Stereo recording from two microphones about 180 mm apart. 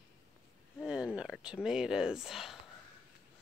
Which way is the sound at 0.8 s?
5° right (ahead or behind).